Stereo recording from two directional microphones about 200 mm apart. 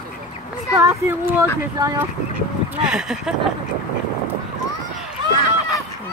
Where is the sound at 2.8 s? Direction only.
5° right (ahead or behind).